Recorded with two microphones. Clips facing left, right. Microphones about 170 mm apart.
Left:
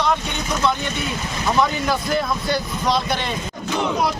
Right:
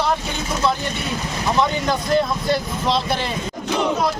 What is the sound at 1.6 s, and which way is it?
Speech, 25° right (ahead or behind).